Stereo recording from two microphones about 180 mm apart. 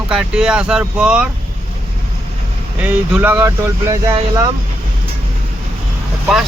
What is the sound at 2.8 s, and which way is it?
Speech, 10° right (ahead or behind).